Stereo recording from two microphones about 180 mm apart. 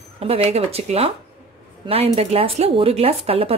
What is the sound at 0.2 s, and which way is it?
A woman's voice, 35° right (ahead or behind).